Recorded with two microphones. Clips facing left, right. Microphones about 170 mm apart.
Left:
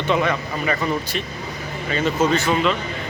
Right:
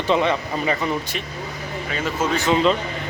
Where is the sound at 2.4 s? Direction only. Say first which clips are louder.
Right 2 dB; 20° right (ahead or behind).